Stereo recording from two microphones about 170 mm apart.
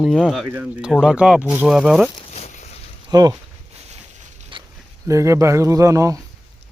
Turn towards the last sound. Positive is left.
turn(degrees=-20)  # may be behind; listen again after turning